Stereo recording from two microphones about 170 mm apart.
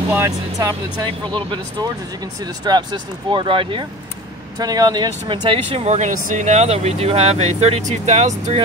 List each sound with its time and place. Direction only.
0.1 s speech: 15° right (ahead or behind); by 8.6 s 40° right (ahead or behind)